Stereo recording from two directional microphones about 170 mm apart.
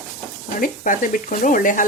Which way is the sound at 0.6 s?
50° left (ahead or behind).